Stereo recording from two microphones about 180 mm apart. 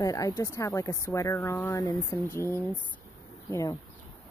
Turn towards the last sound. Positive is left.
turn(degrees=15)  # may be behind; listen again after turning